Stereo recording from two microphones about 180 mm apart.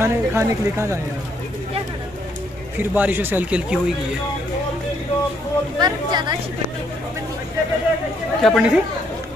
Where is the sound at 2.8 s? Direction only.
10° right (ahead or behind).